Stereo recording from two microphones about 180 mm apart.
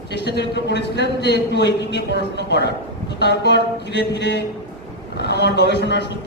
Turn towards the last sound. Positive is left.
turn(degrees=70)  # may be behind; listen again after turning